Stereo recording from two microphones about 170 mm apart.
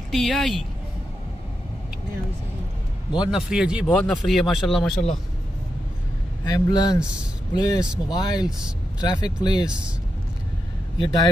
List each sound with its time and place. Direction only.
0.1 s speech: centre (ahead or behind)
3.2 s speech: centre (ahead or behind)
6.4 s speech: 20° left (ahead or behind)
11.0 s speech: 25° left (ahead or behind)